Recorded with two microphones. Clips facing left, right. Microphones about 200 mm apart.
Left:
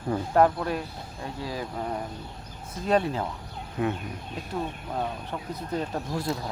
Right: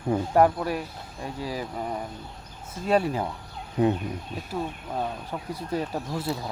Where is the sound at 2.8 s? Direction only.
10° right (ahead or behind).